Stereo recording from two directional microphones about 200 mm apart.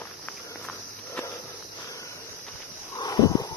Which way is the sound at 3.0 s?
15° left (ahead or behind).